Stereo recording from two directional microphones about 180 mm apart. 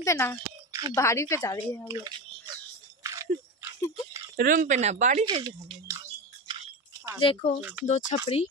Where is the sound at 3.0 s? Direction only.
15° right (ahead or behind).